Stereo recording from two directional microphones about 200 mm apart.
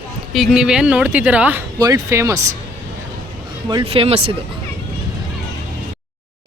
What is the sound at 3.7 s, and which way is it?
Speech, 25° right (ahead or behind).